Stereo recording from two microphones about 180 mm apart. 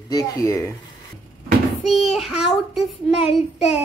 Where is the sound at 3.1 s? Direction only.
35° left (ahead or behind).